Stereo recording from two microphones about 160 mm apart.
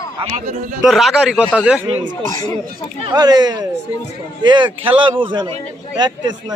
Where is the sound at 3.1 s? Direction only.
25° right (ahead or behind).